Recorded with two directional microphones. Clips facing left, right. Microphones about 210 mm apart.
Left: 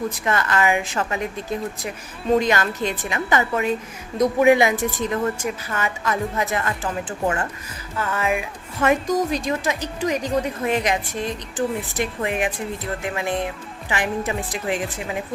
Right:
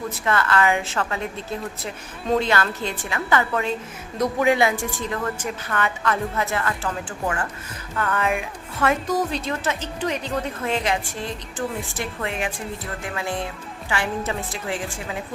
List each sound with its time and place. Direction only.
0.3 s a woman's voice: 15° left (ahead or behind)
5.4 s speech: 10° left (ahead or behind)
7.9 s music: 5° left (ahead or behind)
8.8 s a woman's voice: 15° left (ahead or behind)